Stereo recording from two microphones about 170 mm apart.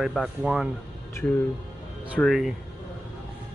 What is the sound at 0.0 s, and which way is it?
Speech, centre (ahead or behind).